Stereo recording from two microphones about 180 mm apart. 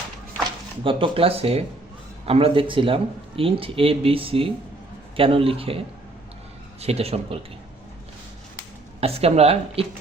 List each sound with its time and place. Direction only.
0.9 s speech: 30° right (ahead or behind)
6.8 s speech: 35° right (ahead or behind)
9.0 s speech: 35° right (ahead or behind)